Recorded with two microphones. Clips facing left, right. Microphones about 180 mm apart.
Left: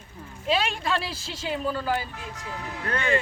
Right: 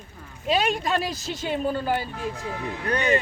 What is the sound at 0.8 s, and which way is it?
Speech, 45° right (ahead or behind).